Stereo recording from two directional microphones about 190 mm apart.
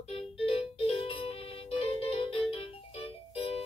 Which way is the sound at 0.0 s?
30° left (ahead or behind).